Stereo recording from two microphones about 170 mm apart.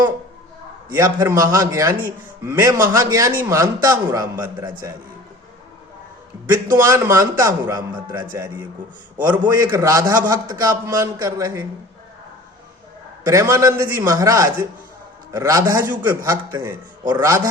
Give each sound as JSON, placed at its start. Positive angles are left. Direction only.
{"t": 0.9, "sound": "a man's voice", "side_deg": -20}
{"t": 6.7, "sound": "a man's voice", "side_deg": -15}
{"t": 13.2, "sound": "a man's voice", "side_deg": -15}